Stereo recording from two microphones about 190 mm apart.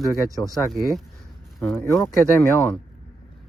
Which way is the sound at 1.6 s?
10° left (ahead or behind).